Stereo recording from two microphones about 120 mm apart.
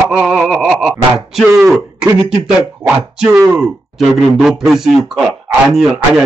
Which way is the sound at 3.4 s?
5° right (ahead or behind).